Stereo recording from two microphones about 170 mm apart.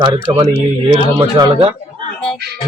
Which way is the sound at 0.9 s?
25° right (ahead or behind).